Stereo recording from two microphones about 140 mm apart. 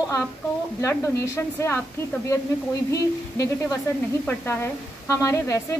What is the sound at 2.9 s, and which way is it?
A woman's voice, 25° left (ahead or behind).